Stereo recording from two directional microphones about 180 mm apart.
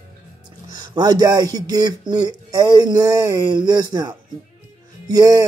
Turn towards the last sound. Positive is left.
turn(degrees=-20)  # may be behind; listen again after turning